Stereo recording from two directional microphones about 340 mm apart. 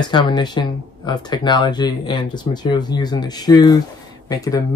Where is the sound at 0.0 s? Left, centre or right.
Centre.